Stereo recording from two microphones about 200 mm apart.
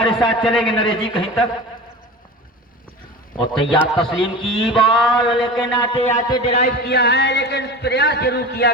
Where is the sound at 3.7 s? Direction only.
Centre (ahead or behind).